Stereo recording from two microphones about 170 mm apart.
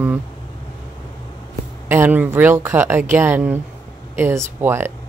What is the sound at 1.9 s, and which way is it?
Speech, 10° right (ahead or behind).